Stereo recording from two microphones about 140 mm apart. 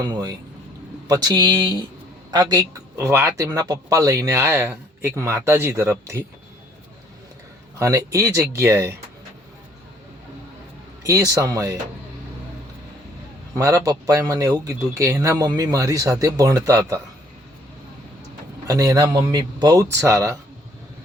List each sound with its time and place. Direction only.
0.0 s a man's voice: 30° right (ahead or behind)
7.8 s a man's voice: 25° right (ahead or behind)
11.0 s a man's voice: 25° right (ahead or behind)
13.5 s a man's voice: 25° right (ahead or behind)
18.7 s a man's voice: 25° right (ahead or behind)